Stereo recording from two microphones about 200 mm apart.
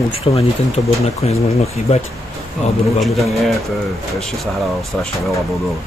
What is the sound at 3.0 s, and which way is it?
Speech, centre (ahead or behind).